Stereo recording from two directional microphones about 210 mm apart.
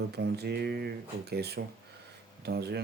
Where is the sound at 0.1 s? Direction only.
50° right (ahead or behind).